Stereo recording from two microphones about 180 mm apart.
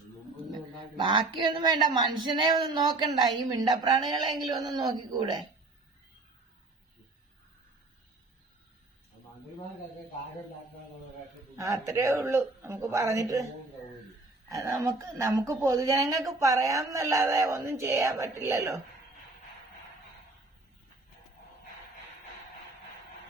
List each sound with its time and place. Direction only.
1.5 s speech: 25° right (ahead or behind)
11.5 s speech: 15° right (ahead or behind)
14.5 s speech: 15° right (ahead or behind)